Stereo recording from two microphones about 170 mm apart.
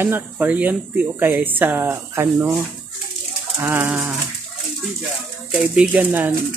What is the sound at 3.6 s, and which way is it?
Speech, 10° right (ahead or behind).